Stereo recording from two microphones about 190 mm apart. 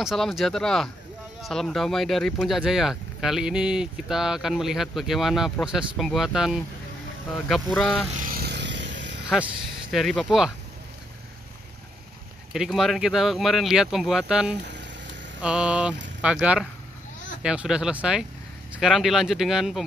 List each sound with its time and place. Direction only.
0.0 s speech: centre (ahead or behind)
8.2 s vehicle: 50° right (ahead or behind); by 9.2 s 70° right (ahead or behind)
9.3 s speech: centre (ahead or behind)
12.5 s speech: centre (ahead or behind)